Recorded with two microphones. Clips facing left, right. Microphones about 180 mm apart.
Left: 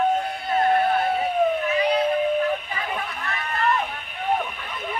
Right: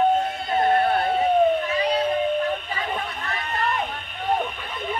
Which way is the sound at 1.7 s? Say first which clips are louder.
Left 2 dB; 35° right (ahead or behind).